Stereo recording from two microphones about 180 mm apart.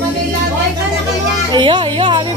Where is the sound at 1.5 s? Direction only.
25° right (ahead or behind).